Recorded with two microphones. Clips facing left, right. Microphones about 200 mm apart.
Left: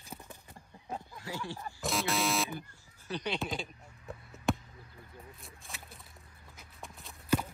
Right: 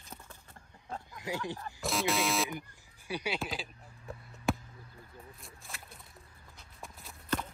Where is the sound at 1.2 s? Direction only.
20° right (ahead or behind).